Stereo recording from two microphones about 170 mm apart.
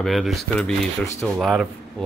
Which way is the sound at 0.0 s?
Centre (ahead or behind).